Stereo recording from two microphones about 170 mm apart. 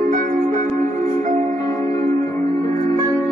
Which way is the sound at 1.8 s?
20° left (ahead or behind).